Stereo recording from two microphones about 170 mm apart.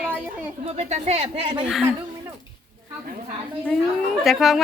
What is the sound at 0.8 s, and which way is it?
Speech, 40° right (ahead or behind).